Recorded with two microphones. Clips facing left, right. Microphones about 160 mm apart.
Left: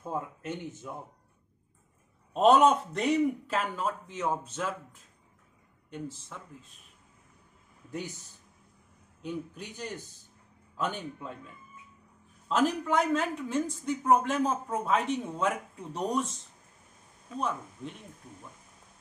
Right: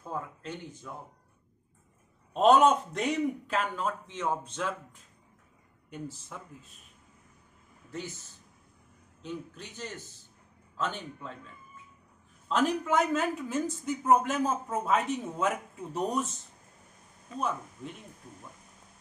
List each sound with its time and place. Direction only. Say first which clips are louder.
0.0 s speech: left 2 dB; 20° left (ahead or behind)
2.3 s a man's voice: even; centre (ahead or behind)
5.9 s speech: left 1 dB; 10° right (ahead or behind)
9.2 s a man's voice: left 3 dB; 10° left (ahead or behind)
12.4 s a man's voice: even; centre (ahead or behind)
17.3 s speech: even; centre (ahead or behind)